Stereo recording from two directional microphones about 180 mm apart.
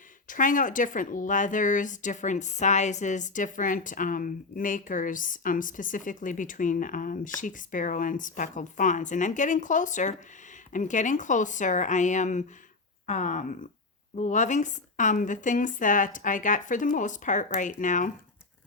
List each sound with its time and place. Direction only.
0.3 s speech: 45° left (ahead or behind)